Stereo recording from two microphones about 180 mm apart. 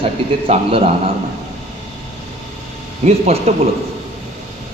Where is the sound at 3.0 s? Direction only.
35° right (ahead or behind).